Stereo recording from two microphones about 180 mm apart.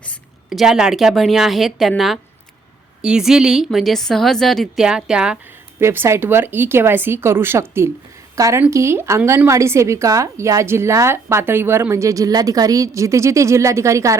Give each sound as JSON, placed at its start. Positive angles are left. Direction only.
{"t": 0.5, "sound": "a woman's voice", "side_deg": -5}